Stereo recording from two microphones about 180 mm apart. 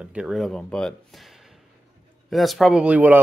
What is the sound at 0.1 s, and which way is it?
Speech, 5° right (ahead or behind).